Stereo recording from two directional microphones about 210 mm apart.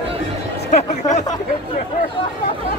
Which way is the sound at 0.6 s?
35° left (ahead or behind).